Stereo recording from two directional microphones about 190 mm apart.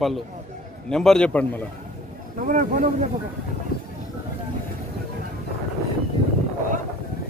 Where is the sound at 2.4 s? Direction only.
45° right (ahead or behind).